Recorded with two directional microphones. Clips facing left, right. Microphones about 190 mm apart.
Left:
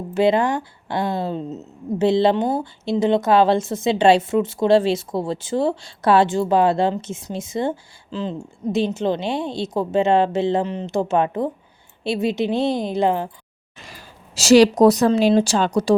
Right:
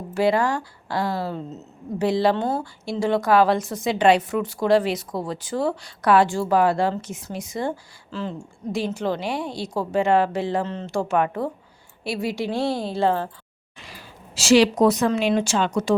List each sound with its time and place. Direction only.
0.1 s speech: 20° left (ahead or behind)
13.7 s speech: 45° left (ahead or behind)